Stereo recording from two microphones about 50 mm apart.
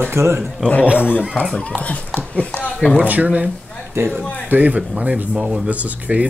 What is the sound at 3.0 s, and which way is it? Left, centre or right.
Speech, right.